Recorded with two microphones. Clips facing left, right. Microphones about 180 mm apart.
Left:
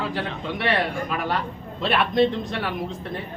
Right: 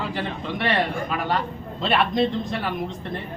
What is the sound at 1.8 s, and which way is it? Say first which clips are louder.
Speech: left 1 dB; centre (ahead or behind).